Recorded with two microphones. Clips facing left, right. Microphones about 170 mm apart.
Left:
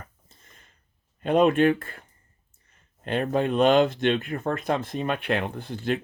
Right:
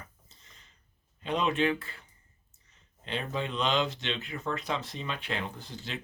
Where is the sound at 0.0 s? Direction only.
50° left (ahead or behind).